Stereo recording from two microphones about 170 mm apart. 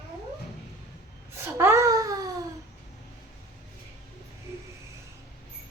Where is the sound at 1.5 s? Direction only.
15° right (ahead or behind).